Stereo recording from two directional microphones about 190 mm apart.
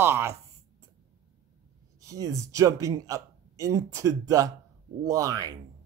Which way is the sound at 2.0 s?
15° right (ahead or behind).